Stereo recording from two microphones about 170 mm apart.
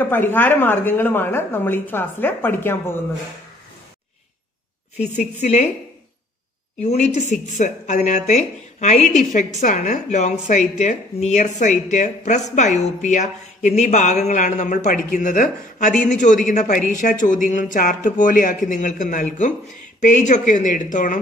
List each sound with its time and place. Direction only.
0.0 s speech: 10° left (ahead or behind)
4.9 s speech: 40° left (ahead or behind)
6.8 s speech: 45° left (ahead or behind)